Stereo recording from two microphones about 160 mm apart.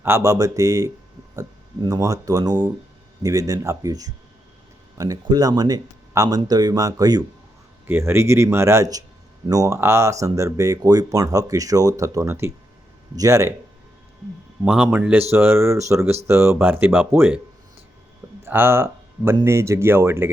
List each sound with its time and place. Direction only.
0.0 s speech: 15° right (ahead or behind)
14.6 s speech: 10° right (ahead or behind)
18.4 s speech: 15° right (ahead or behind)